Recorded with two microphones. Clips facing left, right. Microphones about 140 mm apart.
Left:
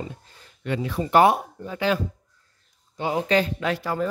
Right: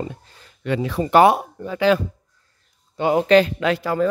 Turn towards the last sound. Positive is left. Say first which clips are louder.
# right 5 dB
turn(degrees=-90)